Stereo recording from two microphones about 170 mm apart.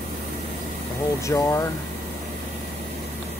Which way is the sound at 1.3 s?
15° left (ahead or behind).